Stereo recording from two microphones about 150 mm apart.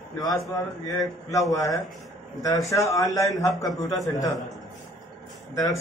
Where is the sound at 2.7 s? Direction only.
20° left (ahead or behind).